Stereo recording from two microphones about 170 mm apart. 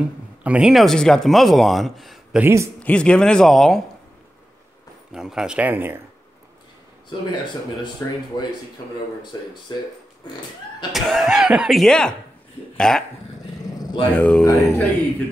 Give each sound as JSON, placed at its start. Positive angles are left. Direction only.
{"t": 0.4, "sound": "speech", "side_deg": -5}
{"t": 2.4, "sound": "a man's voice", "side_deg": -15}
{"t": 2.8, "sound": "speech", "side_deg": 5}
{"t": 5.1, "sound": "speech", "side_deg": -5}
{"t": 8.0, "sound": "speech", "side_deg": 15}
{"t": 9.3, "sound": "speech", "side_deg": 20}
{"t": 10.9, "sound": "speech", "side_deg": 0}
{"t": 13.7, "sound": "purr", "side_deg": 20}
{"t": 14.1, "sound": "speech", "side_deg": 10}
{"t": 14.4, "sound": "speech", "side_deg": 20}